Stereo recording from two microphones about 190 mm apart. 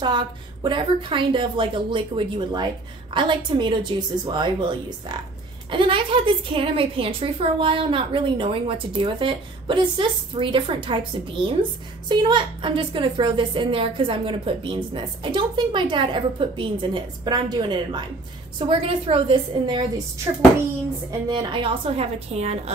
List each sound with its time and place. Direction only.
0.0 s a woman's voice: 25° right (ahead or behind)
21.3 s a woman's voice: 25° right (ahead or behind)